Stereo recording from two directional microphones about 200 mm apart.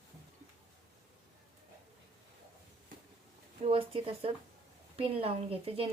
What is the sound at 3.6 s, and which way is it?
Speech, 30° right (ahead or behind).